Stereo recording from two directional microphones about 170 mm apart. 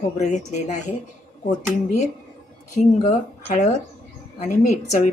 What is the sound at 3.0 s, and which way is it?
Speech, 45° left (ahead or behind).